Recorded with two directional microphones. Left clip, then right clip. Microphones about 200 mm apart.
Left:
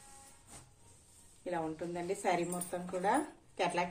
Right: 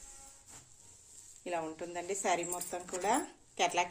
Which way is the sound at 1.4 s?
40° right (ahead or behind).